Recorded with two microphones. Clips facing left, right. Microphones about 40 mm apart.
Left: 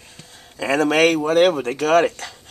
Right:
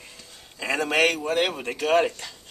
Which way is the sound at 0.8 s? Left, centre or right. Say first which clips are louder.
Left 5 dB; left.